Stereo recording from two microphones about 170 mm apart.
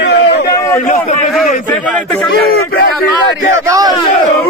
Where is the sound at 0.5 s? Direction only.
20° left (ahead or behind).